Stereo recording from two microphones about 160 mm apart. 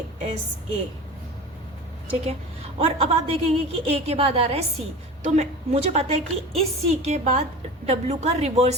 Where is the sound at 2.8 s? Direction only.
40° right (ahead or behind).